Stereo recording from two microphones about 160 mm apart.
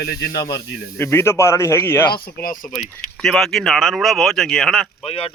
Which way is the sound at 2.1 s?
65° left (ahead or behind).